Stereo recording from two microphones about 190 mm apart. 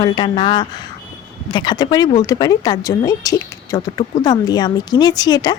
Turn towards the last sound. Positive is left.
turn(degrees=20)  # may be behind; listen again after turning